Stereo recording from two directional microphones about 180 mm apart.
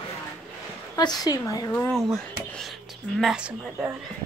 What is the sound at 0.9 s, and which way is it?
Speech, 20° left (ahead or behind).